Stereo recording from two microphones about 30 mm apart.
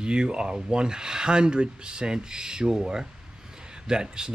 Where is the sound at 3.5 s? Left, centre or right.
Right.